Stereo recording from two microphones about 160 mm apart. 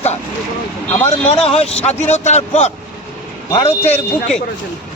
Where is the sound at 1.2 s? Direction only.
40° left (ahead or behind).